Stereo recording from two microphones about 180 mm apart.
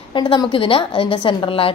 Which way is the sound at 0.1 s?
25° left (ahead or behind).